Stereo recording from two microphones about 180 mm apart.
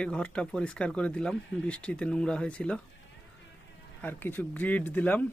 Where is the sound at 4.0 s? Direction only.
10° left (ahead or behind).